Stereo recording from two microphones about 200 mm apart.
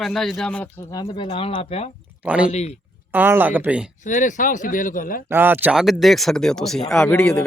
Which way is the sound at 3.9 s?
40° left (ahead or behind).